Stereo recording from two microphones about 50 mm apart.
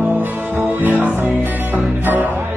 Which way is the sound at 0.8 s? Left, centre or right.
Right.